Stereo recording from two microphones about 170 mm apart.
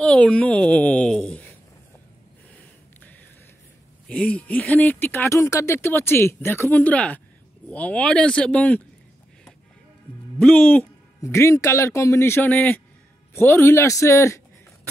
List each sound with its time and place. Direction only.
0.0 s speech: 5° left (ahead or behind)
4.1 s speech: 5° left (ahead or behind)
10.4 s speech: 10° left (ahead or behind)